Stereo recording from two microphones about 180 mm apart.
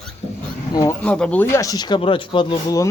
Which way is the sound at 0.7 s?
20° left (ahead or behind).